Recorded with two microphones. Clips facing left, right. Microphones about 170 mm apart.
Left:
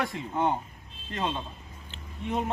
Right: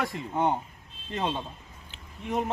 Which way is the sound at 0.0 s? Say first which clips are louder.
Right 1 dB; 10° right (ahead or behind).